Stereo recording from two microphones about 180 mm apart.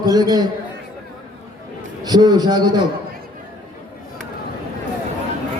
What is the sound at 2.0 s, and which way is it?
Speech, 20° right (ahead or behind).